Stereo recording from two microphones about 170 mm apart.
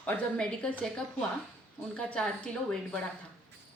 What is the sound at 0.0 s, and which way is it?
Speech, 5° left (ahead or behind).